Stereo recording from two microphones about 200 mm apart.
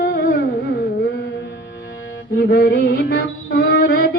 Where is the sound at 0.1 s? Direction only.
50° left (ahead or behind).